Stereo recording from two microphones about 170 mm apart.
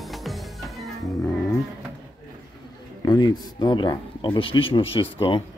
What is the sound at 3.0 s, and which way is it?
Speech, 25° left (ahead or behind).